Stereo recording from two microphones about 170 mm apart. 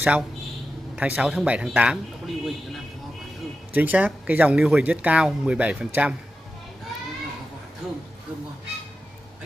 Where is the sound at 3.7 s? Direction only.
10° right (ahead or behind).